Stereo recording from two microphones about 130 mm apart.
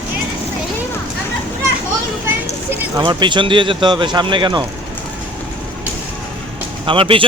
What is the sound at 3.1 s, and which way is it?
A man's voice, 35° right (ahead or behind).